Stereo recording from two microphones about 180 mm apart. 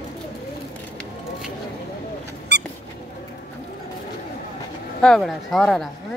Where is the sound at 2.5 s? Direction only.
65° right (ahead or behind).